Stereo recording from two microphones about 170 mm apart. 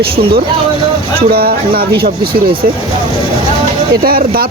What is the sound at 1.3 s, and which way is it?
Speech, 65° right (ahead or behind).